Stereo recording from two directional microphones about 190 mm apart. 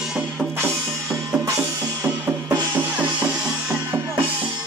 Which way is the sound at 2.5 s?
10° right (ahead or behind).